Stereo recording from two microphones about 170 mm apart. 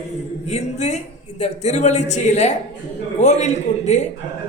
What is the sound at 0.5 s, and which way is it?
A man's voice, 40° left (ahead or behind).